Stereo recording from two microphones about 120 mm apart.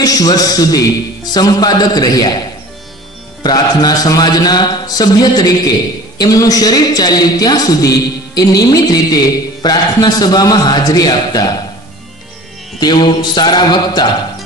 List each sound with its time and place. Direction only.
0.0 s music: 30° left (ahead or behind)
3.4 s music: 35° left (ahead or behind)
12.8 s music: 40° left (ahead or behind)